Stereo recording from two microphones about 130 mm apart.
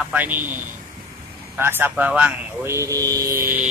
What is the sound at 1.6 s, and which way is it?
Speech, 15° right (ahead or behind).